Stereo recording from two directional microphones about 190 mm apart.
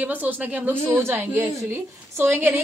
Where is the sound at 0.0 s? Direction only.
10° right (ahead or behind).